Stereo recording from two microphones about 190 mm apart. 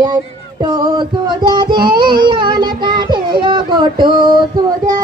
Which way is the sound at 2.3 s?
25° right (ahead or behind).